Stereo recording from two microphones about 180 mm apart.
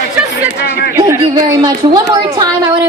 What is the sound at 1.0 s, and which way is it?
A woman's voice, 25° right (ahead or behind).